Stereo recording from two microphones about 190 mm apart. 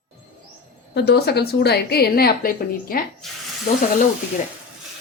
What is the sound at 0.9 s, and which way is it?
A woman's voice, 60° left (ahead or behind).